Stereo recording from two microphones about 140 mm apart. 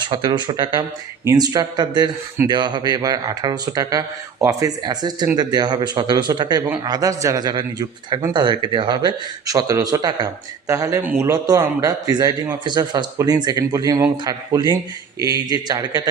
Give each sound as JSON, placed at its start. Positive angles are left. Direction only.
{"t": 0.1, "sound": "speech", "side_deg": -35}